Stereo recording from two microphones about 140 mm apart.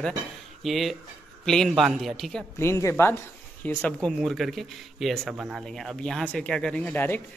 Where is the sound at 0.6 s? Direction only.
Centre (ahead or behind).